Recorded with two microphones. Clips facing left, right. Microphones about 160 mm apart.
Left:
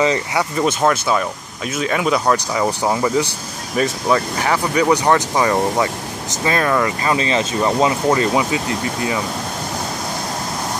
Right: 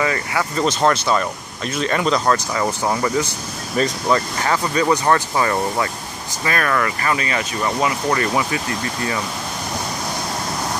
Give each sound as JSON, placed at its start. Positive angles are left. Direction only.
{"t": 0.0, "sound": "speech", "side_deg": 20}